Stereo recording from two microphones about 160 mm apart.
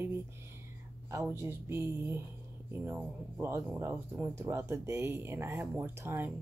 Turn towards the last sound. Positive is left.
turn(degrees=-15)  # may be behind; listen again after turning